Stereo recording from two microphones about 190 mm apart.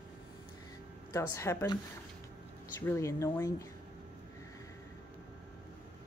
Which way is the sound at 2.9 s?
15° left (ahead or behind).